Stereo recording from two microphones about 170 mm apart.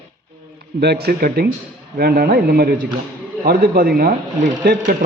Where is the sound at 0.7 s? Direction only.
70° right (ahead or behind).